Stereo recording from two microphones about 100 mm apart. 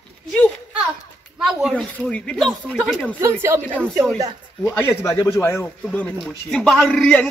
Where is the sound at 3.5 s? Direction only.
30° right (ahead or behind).